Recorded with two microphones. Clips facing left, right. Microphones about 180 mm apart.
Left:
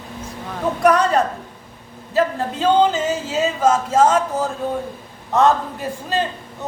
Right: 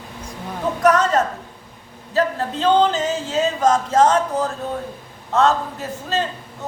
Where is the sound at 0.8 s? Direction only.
10° left (ahead or behind).